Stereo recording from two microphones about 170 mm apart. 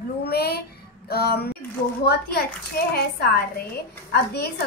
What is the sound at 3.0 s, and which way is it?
A woman's voice, 65° left (ahead or behind).